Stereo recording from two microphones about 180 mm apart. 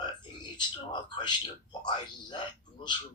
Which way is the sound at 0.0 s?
25° left (ahead or behind).